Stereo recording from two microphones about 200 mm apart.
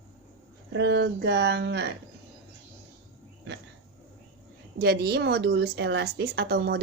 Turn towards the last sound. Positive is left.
turn(degrees=-50)  # may be behind; listen again after turning